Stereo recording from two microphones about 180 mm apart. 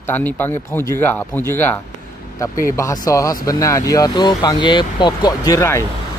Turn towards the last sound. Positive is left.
turn(degrees=15)  # may be behind; listen again after turning